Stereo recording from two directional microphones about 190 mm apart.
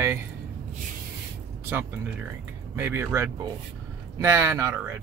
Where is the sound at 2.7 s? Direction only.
10° right (ahead or behind).